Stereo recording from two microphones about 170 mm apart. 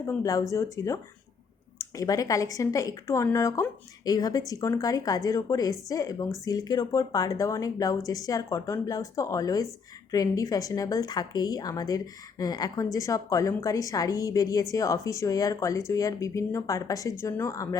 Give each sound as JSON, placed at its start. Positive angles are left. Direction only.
{"t": 0.0, "sound": "speech", "side_deg": 20}